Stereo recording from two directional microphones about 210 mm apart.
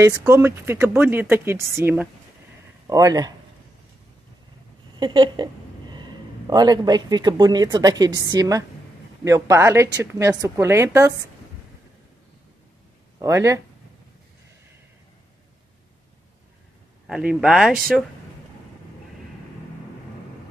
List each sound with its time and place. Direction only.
0.0 s speech: 15° right (ahead or behind)
4.9 s a sound: 20° right (ahead or behind)
5.9 s speech: 20° right (ahead or behind)
13.2 s speech: 15° right (ahead or behind)
17.1 s speech: 5° right (ahead or behind)